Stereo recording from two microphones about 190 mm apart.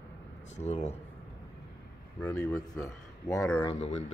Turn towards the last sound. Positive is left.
turn(degrees=35)  # may be behind; listen again after turning